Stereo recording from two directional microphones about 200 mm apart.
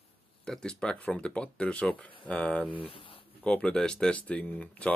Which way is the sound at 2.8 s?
25° left (ahead or behind).